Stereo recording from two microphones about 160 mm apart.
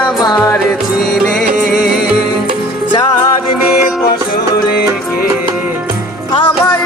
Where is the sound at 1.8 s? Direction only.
75° left (ahead or behind).